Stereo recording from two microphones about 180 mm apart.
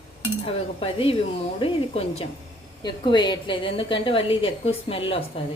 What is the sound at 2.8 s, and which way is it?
A woman's voice, 25° left (ahead or behind).